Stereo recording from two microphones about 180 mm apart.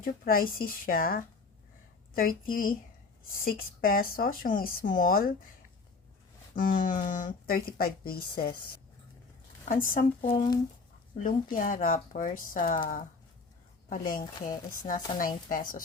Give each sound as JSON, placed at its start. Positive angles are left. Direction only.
{"t": 0.0, "sound": "speech", "side_deg": 55}
{"t": 6.6, "sound": "speech", "side_deg": 50}
{"t": 9.6, "sound": "speech", "side_deg": 45}
{"t": 10.2, "sound": "speech", "side_deg": 25}
{"t": 11.5, "sound": "speech", "side_deg": 50}
{"t": 14.1, "sound": "speech", "side_deg": 50}